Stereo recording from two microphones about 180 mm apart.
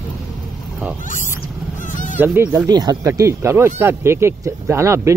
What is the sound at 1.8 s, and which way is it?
Honk, 45° left (ahead or behind).